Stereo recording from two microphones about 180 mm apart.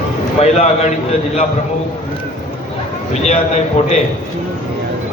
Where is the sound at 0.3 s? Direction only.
35° left (ahead or behind).